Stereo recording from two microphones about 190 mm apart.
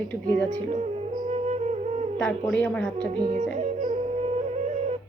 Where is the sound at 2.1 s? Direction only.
5° left (ahead or behind).